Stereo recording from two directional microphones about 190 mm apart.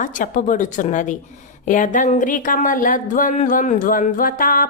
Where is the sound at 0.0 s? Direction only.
45° left (ahead or behind).